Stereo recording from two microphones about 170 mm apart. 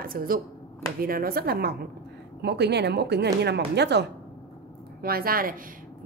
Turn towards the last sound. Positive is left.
turn(degrees=-60)  # may be behind; listen again after turning